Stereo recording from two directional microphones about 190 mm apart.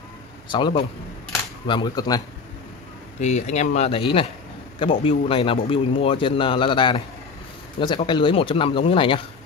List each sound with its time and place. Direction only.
0.5 s a man's voice: 25° left (ahead or behind)
3.2 s a man's voice: 35° left (ahead or behind)